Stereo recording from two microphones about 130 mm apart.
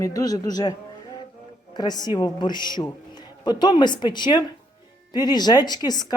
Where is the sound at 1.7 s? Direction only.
30° left (ahead or behind).